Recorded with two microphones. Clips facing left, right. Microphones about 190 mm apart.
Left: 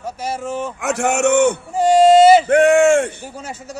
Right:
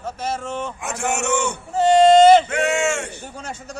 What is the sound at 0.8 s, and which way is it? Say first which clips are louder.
Speech: left 9 dB; 65° left (ahead or behind).